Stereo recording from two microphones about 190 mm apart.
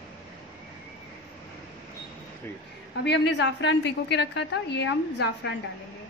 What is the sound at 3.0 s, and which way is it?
A woman's voice, 60° left (ahead or behind).